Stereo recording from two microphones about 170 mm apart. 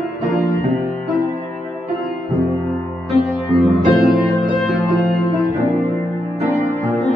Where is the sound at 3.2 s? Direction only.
Centre (ahead or behind).